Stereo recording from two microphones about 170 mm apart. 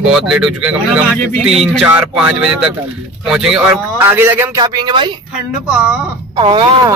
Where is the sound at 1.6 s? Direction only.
5° right (ahead or behind); by 5.1 s 25° right (ahead or behind).